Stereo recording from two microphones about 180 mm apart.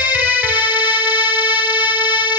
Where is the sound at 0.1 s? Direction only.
10° right (ahead or behind).